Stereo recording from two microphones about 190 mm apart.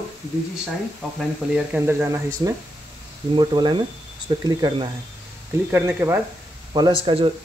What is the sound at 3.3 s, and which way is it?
Speech, 25° right (ahead or behind).